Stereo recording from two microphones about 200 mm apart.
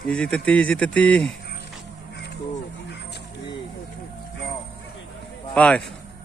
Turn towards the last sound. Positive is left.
turn(degrees=5)  # may be behind; listen again after turning